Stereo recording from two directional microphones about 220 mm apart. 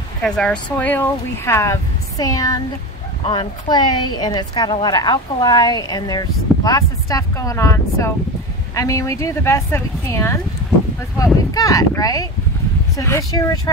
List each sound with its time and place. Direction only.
0.2 s a woman's voice: 5° left (ahead or behind)
11.5 s a woman's voice: 15° left (ahead or behind)